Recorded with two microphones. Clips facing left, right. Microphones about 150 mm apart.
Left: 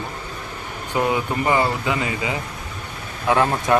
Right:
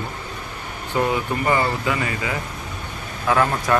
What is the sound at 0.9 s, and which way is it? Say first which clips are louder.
Speech: even; 15° left (ahead or behind).